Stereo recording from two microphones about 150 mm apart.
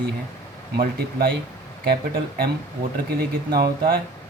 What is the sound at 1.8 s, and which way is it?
Speech, 90° right.